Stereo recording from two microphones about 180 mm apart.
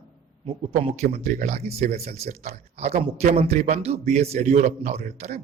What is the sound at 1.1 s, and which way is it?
A man's voice, 40° right (ahead or behind).